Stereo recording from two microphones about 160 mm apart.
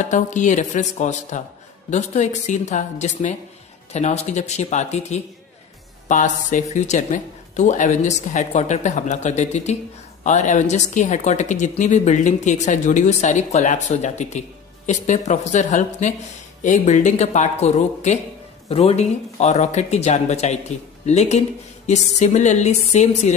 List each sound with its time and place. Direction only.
0.0 s speech: 50° left (ahead or behind)